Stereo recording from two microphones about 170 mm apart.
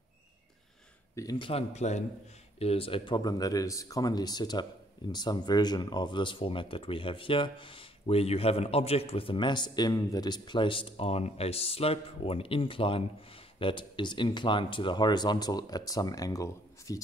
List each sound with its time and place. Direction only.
1.1 s speech: 20° left (ahead or behind)
1.5 s speech: 40° left (ahead or behind); by 17.0 s 20° left (ahead or behind)